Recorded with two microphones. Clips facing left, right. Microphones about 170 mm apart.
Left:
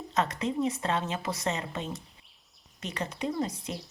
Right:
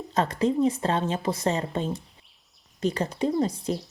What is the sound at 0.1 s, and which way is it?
Speech, 35° right (ahead or behind).